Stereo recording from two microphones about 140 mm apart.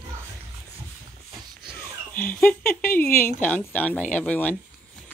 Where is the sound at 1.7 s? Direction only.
15° left (ahead or behind).